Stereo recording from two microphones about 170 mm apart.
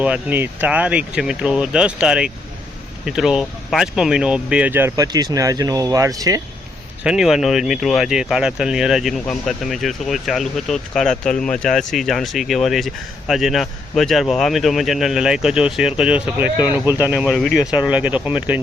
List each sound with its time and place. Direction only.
0.0 s speech: 10° right (ahead or behind)
7.0 s speech: 5° right (ahead or behind)